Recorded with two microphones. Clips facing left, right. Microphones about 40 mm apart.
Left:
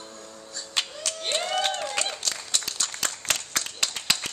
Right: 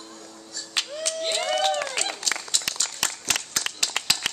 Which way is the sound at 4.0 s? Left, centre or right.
Right.